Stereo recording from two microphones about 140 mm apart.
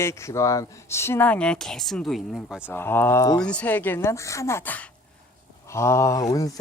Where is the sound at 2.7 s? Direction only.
15° left (ahead or behind).